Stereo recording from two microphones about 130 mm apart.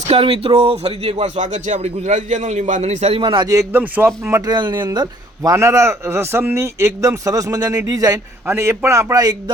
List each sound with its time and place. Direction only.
0.1 s a man's voice: 45° right (ahead or behind); by 9.3 s 25° right (ahead or behind)